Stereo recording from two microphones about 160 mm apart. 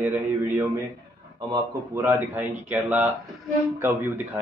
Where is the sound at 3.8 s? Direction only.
15° right (ahead or behind).